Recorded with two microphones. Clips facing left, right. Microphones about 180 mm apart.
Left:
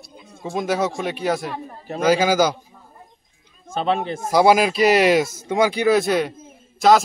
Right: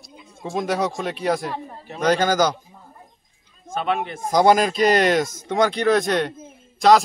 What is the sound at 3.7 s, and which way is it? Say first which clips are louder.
Speech: left 2 dB; 30° left (ahead or behind).